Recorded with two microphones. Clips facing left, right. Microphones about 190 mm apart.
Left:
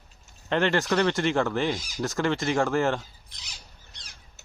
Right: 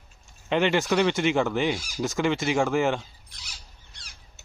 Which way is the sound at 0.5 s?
Centre (ahead or behind).